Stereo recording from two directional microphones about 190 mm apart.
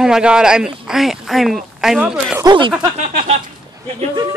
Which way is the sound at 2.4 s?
25° right (ahead or behind).